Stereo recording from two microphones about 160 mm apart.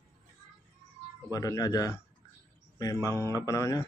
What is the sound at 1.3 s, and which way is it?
Mantra, 20° left (ahead or behind).